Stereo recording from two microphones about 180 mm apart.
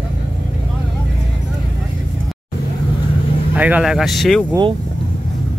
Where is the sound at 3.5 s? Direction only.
10° right (ahead or behind).